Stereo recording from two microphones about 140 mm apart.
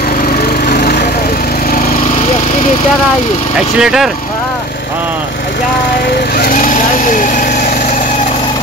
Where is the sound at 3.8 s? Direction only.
5° right (ahead or behind).